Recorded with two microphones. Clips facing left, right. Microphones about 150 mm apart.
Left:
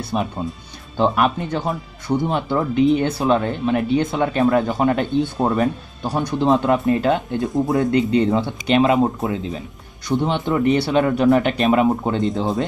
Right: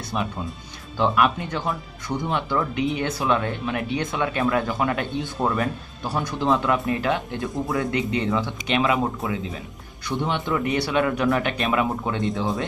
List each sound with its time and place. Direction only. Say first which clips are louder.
0.1 s speech: left 4 dB; 35° left (ahead or behind)
7.9 s speech: left 7 dB; 35° left (ahead or behind)
12.4 s speech: left 4 dB; 20° left (ahead or behind)